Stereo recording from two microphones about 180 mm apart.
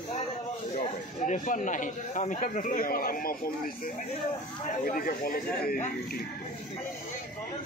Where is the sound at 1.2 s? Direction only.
45° left (ahead or behind).